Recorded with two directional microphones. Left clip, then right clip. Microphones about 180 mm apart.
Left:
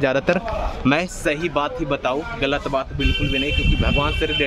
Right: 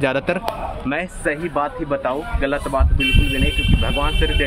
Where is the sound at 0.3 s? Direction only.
15° left (ahead or behind).